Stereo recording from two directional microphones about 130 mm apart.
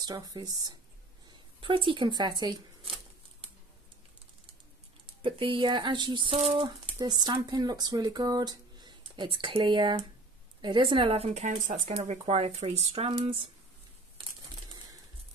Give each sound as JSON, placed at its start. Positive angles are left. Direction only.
{"t": 0.0, "sound": "speech", "side_deg": -30}
{"t": 1.6, "sound": "speech", "side_deg": -40}
{"t": 5.0, "sound": "speech", "side_deg": -45}
{"t": 6.3, "sound": "speech", "side_deg": -50}
{"t": 6.6, "sound": "speech", "side_deg": -30}
{"t": 11.9, "sound": "speech", "side_deg": -60}